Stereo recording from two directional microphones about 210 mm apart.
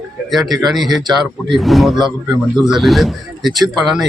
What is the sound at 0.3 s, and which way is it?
Speech, centre (ahead or behind).